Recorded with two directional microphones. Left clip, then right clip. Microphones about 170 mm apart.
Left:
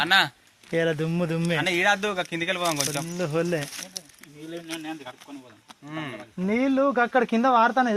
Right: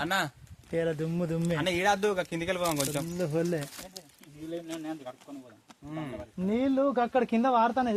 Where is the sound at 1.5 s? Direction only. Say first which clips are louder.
Left 5 dB; 90° right.